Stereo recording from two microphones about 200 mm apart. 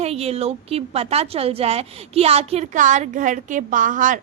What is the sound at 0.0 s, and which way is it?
A woman's voice, 30° right (ahead or behind).